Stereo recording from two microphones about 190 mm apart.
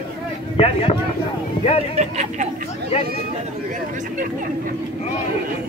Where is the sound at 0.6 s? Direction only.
30° left (ahead or behind).